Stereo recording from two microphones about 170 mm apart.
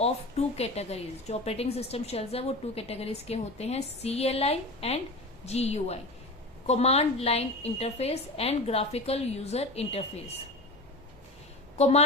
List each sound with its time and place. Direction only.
0.0 s a woman's voice: 35° left (ahead or behind)
11.8 s a woman's voice: 40° left (ahead or behind)